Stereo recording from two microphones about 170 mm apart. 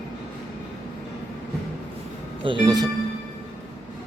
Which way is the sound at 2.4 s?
30° right (ahead or behind).